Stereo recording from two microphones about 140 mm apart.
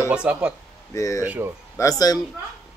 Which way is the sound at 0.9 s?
25° left (ahead or behind).